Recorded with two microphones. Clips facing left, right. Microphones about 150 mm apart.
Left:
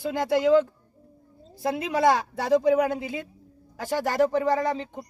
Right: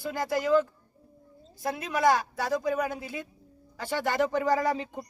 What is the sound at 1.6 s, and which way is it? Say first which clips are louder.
A woman's voice: left 3 dB; 25° left (ahead or behind).